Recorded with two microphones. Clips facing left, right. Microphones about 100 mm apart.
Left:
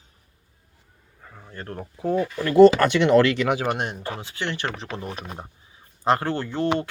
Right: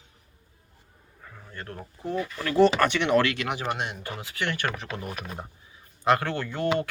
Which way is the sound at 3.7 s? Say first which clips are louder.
Left 4 dB; 45° left (ahead or behind).